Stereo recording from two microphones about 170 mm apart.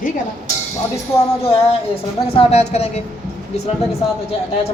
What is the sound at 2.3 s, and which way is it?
Speech, 40° left (ahead or behind).